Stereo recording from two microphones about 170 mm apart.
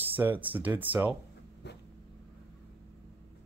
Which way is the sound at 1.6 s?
90° left.